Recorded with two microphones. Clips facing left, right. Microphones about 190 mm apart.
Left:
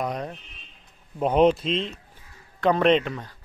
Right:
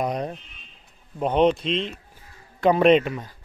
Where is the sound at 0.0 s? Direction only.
20° right (ahead or behind).